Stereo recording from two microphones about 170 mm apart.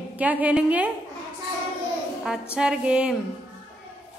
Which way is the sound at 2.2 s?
5° right (ahead or behind).